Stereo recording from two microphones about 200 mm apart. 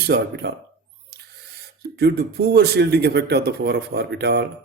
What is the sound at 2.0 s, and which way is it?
Speech, 55° right (ahead or behind).